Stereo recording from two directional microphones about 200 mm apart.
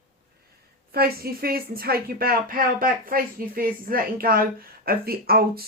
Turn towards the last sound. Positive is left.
turn(degrees=-50)  # may be behind; listen again after turning